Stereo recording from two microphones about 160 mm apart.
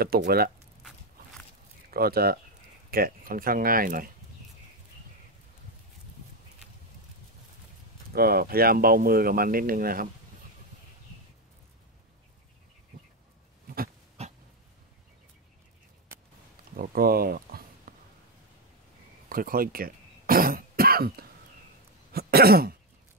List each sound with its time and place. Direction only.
0.0 s speech: 75° right (ahead or behind)
1.9 s speech: 70° right (ahead or behind)
8.1 s speech: 70° right (ahead or behind)
14.2 s dog: 40° right (ahead or behind)
16.7 s a sound: 65° right (ahead or behind)
19.2 s throat clearing: 65° right (ahead or behind)